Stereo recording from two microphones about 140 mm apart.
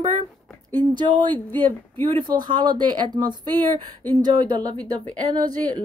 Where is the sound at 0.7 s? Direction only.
35° right (ahead or behind).